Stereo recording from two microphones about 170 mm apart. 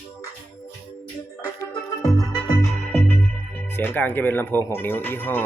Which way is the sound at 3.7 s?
15° left (ahead or behind).